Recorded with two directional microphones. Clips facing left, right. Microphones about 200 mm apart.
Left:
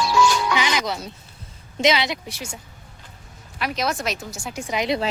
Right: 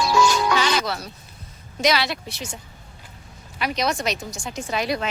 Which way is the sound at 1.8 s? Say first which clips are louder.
Left 1 dB; 20° left (ahead or behind).